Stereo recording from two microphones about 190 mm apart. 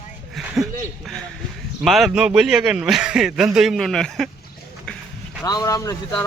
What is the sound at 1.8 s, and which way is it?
A man's voice, centre (ahead or behind).